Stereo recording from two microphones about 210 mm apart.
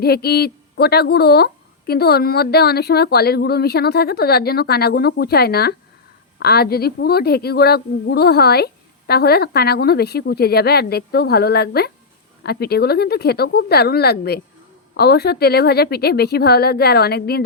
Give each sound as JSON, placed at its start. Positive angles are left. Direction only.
{"t": 0.0, "sound": "a woman's voice", "side_deg": 50}